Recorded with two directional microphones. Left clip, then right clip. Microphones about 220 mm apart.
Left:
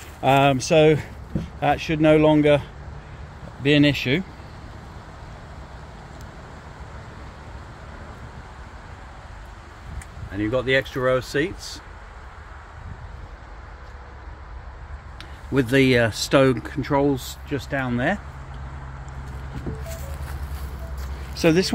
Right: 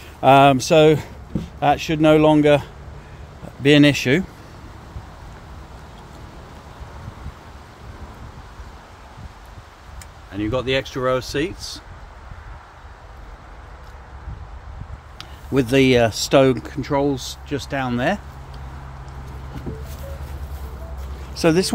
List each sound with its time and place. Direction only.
0.2 s speech: 30° right (ahead or behind)
3.6 s speech: 40° right (ahead or behind)
10.3 s speech: 10° right (ahead or behind)
15.1 s speech: 10° right (ahead or behind)
21.4 s speech: 10° right (ahead or behind)